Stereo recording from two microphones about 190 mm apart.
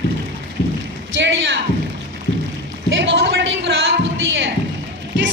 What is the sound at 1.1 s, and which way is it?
Speech, 70° right (ahead or behind).